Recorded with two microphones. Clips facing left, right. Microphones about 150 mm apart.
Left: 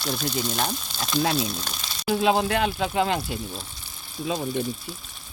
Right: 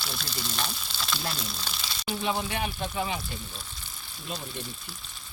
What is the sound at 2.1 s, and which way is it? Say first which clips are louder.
Speech: left 9 dB; 90° left.